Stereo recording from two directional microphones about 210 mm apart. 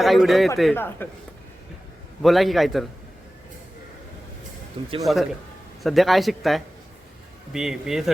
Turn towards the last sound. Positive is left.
turn(degrees=0)  # may be behind; listen again after turning